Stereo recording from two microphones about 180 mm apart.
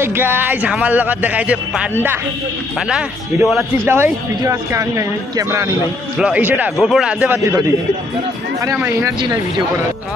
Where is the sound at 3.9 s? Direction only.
15° right (ahead or behind).